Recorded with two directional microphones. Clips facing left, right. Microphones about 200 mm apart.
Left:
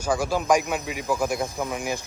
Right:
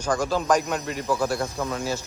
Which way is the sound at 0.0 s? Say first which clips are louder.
Even; 10° left (ahead or behind).